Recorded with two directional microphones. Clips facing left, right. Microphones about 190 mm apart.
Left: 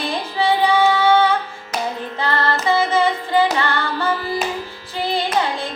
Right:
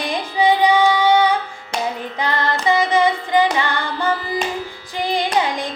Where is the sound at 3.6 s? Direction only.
15° right (ahead or behind).